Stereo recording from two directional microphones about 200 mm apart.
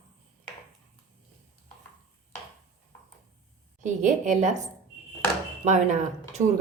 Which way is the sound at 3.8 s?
40° right (ahead or behind).